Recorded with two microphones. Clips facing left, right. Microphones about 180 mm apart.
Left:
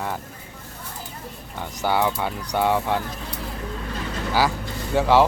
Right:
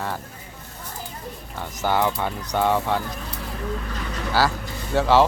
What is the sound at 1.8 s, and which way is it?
Speech, 10° left (ahead or behind).